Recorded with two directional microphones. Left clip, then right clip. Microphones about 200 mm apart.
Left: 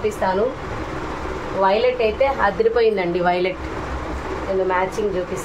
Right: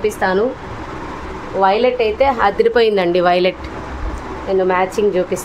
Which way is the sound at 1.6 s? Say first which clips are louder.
Right 4 dB; 60° right (ahead or behind).